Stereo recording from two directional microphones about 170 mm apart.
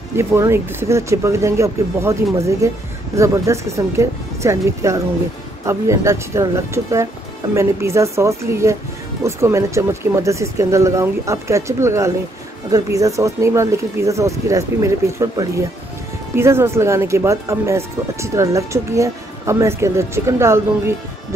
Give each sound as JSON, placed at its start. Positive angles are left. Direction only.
{"t": 0.1, "sound": "speech", "side_deg": -15}